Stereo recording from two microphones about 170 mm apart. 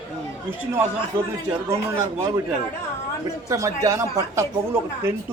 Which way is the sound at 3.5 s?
20° right (ahead or behind).